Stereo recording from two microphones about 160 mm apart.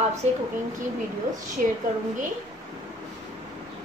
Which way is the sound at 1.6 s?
55° right (ahead or behind).